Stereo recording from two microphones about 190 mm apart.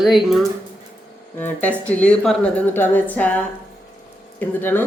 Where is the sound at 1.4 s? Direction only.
10° left (ahead or behind).